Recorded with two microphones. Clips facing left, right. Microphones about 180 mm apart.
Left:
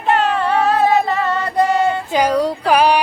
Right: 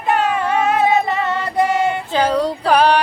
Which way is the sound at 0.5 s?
20° right (ahead or behind).